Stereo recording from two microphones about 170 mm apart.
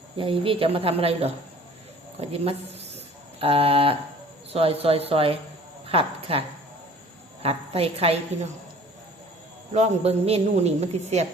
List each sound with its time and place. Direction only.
0.2 s a woman's voice: 30° right (ahead or behind)
2.3 s a woman's voice: 35° right (ahead or behind)
7.4 s a woman's voice: 35° right (ahead or behind)
9.7 s a woman's voice: 40° right (ahead or behind)